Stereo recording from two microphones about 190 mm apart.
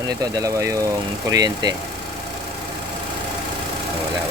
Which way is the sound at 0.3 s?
15° right (ahead or behind).